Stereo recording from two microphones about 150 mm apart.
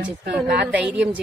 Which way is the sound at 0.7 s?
5° right (ahead or behind).